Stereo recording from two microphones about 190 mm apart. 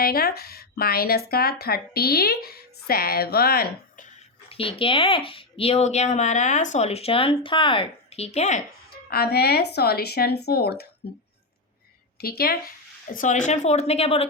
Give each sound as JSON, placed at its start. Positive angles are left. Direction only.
{"t": 0.0, "sound": "speech", "side_deg": 55}
{"t": 4.4, "sound": "speech", "side_deg": 30}
{"t": 8.9, "sound": "speech", "side_deg": 55}
{"t": 12.2, "sound": "speech", "side_deg": 55}